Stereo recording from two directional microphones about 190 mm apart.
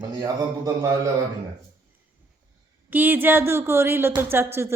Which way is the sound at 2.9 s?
10° right (ahead or behind).